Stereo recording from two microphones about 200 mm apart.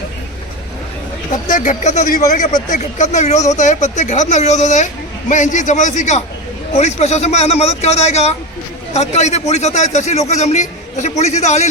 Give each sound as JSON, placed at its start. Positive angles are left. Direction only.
{"t": 1.5, "sound": "a man's voice", "side_deg": 40}